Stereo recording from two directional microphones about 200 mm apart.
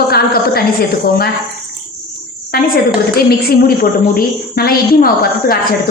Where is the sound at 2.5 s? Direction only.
50° left (ahead or behind).